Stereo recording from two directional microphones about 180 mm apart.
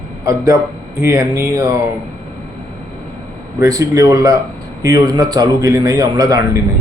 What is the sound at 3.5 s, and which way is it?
A man's voice, 15° right (ahead or behind).